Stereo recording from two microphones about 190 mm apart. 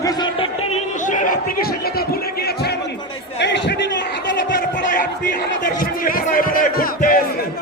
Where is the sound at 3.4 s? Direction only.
65° left (ahead or behind).